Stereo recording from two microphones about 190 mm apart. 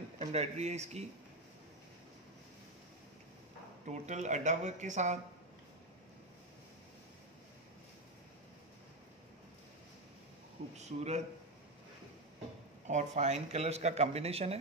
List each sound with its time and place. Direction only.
0.2 s speech: 35° right (ahead or behind)
3.8 s speech: 40° right (ahead or behind)
10.8 s speech: 35° right (ahead or behind)
12.8 s speech: 35° right (ahead or behind)